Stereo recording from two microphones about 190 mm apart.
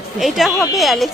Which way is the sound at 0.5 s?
15° left (ahead or behind).